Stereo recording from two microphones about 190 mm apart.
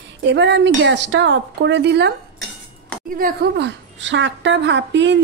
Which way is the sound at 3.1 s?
55° right (ahead or behind).